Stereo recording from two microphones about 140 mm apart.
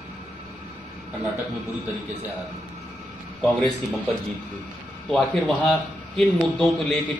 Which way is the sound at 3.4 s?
Centre (ahead or behind).